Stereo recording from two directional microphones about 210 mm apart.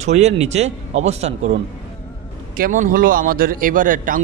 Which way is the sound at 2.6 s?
40° right (ahead or behind).